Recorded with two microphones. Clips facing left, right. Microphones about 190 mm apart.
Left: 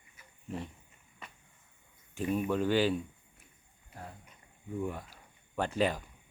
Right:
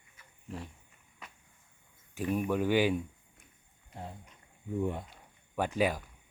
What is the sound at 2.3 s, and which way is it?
Speech, 10° right (ahead or behind).